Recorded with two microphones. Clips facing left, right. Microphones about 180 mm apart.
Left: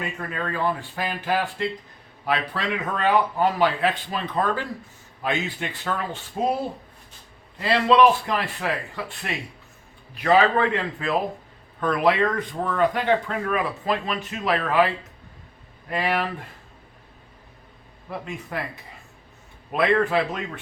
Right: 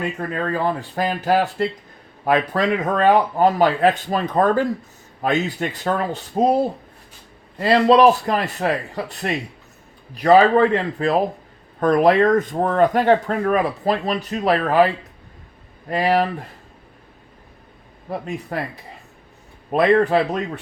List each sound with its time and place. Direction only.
0.0 s speech: 35° right (ahead or behind)
7.6 s speech: 40° right (ahead or behind)
15.9 s speech: 40° right (ahead or behind)
18.1 s speech: 40° right (ahead or behind)
19.7 s speech: 40° right (ahead or behind)